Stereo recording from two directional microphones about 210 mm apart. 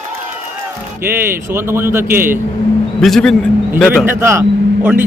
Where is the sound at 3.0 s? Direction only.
Centre (ahead or behind).